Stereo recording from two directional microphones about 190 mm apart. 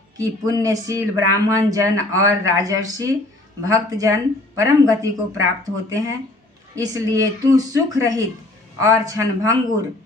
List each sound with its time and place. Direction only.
0.2 s speech: 20° right (ahead or behind)